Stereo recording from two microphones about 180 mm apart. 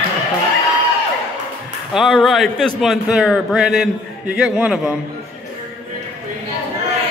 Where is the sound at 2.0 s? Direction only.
Centre (ahead or behind).